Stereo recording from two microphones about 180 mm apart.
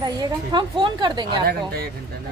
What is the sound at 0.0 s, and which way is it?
A woman's voice, 25° right (ahead or behind).